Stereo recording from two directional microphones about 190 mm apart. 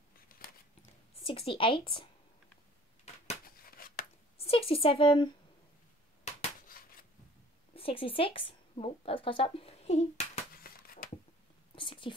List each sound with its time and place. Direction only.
0.3 s scissors: 45° left (ahead or behind)
1.2 s a woman's voice: 30° left (ahead or behind)
3.4 s a sound: 50° left (ahead or behind)
4.4 s a woman's voice: 30° left (ahead or behind)
7.7 s speech: 30° left (ahead or behind)
10.6 s a sound: 50° left (ahead or behind)
11.7 s whispering: 25° left (ahead or behind)